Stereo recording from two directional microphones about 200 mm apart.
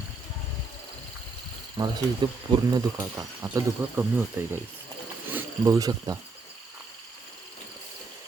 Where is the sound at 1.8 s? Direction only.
15° right (ahead or behind).